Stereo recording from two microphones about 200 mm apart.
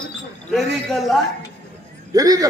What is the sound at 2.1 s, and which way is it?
Speech, 15° right (ahead or behind).